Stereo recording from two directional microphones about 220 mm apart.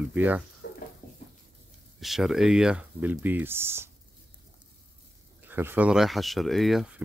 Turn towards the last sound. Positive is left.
turn(degrees=0)  # may be behind; listen again after turning